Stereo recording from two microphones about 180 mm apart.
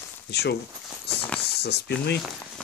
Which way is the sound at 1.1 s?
65° left (ahead or behind).